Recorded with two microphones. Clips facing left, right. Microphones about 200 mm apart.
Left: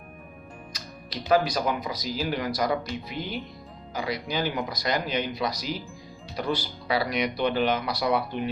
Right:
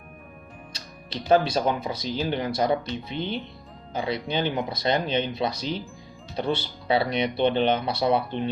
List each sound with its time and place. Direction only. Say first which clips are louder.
0.7 s speech: right 3 dB; 25° right (ahead or behind)
5.6 s speech: right 3 dB; 5° left (ahead or behind)
6.3 s speech: right 2 dB; 25° right (ahead or behind)